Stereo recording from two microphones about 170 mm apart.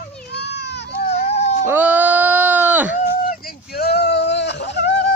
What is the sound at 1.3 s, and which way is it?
Cat, 40° left (ahead or behind).